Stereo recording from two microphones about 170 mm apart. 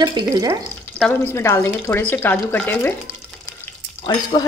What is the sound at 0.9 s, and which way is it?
Speech, 10° left (ahead or behind).